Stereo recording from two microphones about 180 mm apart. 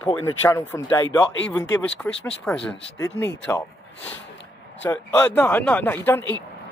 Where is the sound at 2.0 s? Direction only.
5° left (ahead or behind).